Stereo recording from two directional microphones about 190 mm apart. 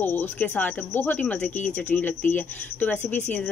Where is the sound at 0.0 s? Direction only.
10° left (ahead or behind).